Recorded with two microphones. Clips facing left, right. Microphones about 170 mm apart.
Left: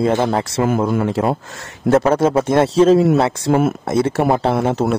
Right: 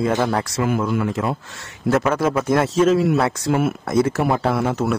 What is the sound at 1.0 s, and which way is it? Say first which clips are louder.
A man's voice: left 5 dB; 30° left (ahead or behind).